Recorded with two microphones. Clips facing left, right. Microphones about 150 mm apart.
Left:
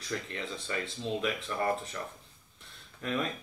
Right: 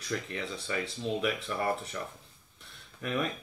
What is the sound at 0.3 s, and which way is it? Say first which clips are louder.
Speech: right 1 dB; 15° right (ahead or behind).